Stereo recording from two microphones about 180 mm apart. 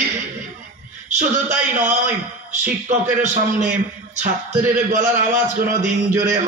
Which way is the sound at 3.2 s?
40° right (ahead or behind).